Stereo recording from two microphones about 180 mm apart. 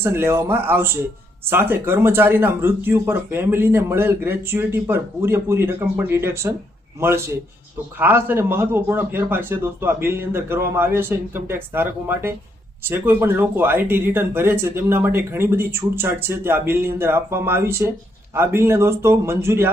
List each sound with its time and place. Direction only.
0.0 s speech: 15° right (ahead or behind)
7.9 s speech: 10° right (ahead or behind)